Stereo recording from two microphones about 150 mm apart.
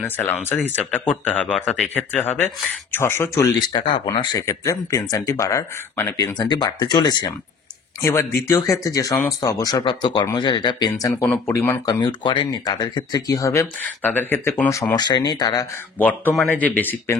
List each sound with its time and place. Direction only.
0.2 s speech: 15° left (ahead or behind); by 7.3 s 30° left (ahead or behind)
8.0 s speech: 20° left (ahead or behind)
11.8 s speech: 30° left (ahead or behind)
16.0 s speech: 10° left (ahead or behind)